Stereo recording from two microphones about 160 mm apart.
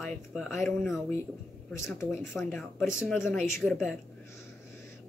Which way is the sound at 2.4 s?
10° left (ahead or behind).